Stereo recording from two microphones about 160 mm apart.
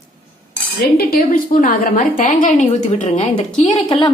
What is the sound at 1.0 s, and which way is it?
A woman's voice, 65° left (ahead or behind).